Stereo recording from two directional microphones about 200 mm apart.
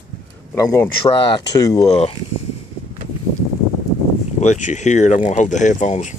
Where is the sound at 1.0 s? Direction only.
25° left (ahead or behind).